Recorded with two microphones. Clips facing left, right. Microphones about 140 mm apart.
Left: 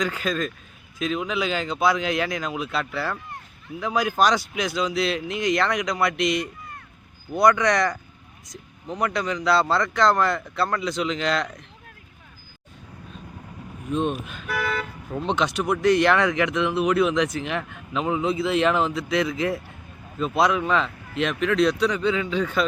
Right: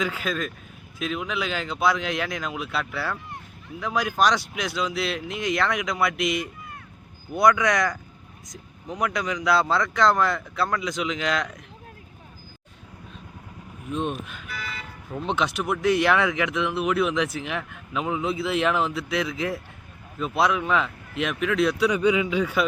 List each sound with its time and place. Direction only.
0.0 s speech: 5° right (ahead or behind)
13.9 s speech: centre (ahead or behind)
14.4 s speech: 65° left (ahead or behind)
15.2 s speech: centre (ahead or behind)